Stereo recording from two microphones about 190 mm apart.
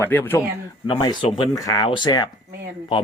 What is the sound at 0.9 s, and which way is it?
Speech, 20° left (ahead or behind).